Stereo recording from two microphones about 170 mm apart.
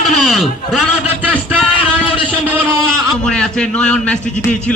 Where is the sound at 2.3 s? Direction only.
10° right (ahead or behind).